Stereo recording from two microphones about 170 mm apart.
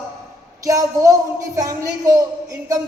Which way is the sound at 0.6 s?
20° right (ahead or behind).